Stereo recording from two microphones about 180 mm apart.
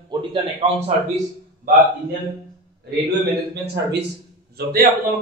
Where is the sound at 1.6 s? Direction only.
50° right (ahead or behind).